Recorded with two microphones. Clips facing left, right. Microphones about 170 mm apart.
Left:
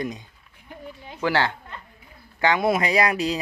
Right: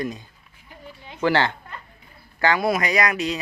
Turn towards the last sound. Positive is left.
turn(degrees=30)  # may be behind; listen again after turning